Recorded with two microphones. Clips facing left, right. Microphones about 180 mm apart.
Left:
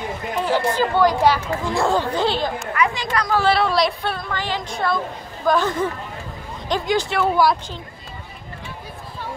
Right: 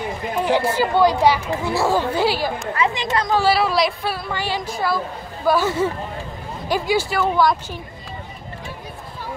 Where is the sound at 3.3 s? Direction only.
5° right (ahead or behind).